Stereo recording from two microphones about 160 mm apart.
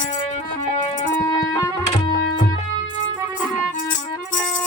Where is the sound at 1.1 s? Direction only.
20° left (ahead or behind).